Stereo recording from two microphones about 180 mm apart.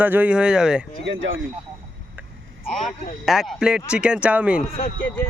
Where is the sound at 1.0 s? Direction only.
90° right.